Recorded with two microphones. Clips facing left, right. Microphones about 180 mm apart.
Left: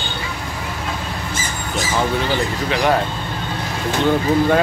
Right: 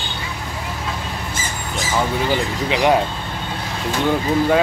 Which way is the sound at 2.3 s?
15° right (ahead or behind).